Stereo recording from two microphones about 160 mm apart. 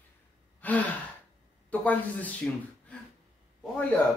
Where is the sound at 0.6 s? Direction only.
10° left (ahead or behind).